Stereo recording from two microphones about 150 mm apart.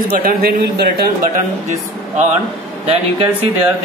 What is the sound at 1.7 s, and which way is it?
Speech, 50° right (ahead or behind).